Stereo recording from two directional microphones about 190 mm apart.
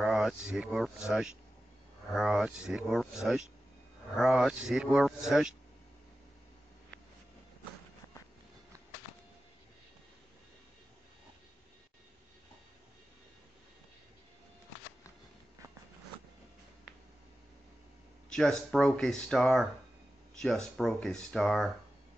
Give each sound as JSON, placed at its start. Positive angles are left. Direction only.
{"t": 0.0, "sound": "speech", "side_deg": 0}
{"t": 18.3, "sound": "speech", "side_deg": 0}
{"t": 20.7, "sound": "speech", "side_deg": 0}